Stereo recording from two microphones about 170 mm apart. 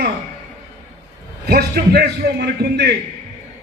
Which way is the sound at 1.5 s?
70° right (ahead or behind).